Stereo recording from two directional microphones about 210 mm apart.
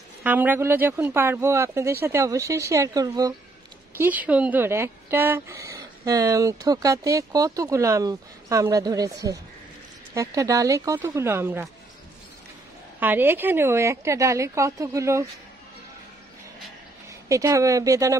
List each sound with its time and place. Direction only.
0.2 s speech: 10° right (ahead or behind)
13.0 s speech: 10° right (ahead or behind)
17.1 s speech: 15° right (ahead or behind)